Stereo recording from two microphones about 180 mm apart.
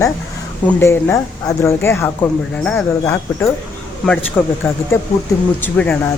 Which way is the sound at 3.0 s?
15° left (ahead or behind).